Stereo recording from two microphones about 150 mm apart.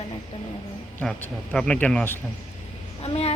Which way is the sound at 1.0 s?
5° left (ahead or behind).